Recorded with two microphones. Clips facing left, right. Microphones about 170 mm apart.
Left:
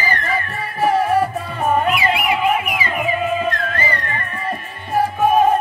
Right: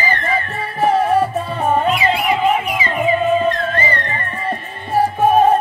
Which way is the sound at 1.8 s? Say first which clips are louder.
Right 2 dB; 30° right (ahead or behind).